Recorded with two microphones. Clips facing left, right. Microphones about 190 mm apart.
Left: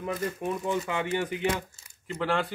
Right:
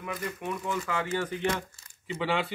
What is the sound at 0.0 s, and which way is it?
A man's voice, 30° left (ahead or behind).